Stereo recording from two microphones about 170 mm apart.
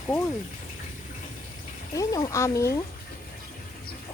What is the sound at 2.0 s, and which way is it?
Speech, 20° left (ahead or behind).